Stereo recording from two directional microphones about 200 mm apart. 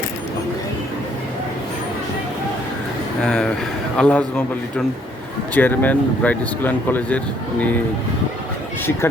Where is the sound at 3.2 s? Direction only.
5° left (ahead or behind).